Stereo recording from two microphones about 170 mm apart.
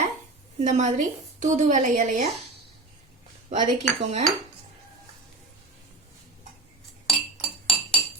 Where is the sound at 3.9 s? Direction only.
40° right (ahead or behind).